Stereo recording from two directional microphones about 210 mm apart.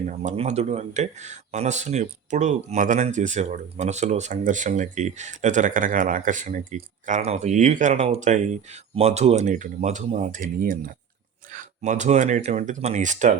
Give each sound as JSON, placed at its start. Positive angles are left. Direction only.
{"t": 0.1, "sound": "speech", "side_deg": -35}